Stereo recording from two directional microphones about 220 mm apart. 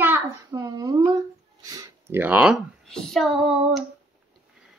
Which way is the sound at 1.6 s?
15° right (ahead or behind).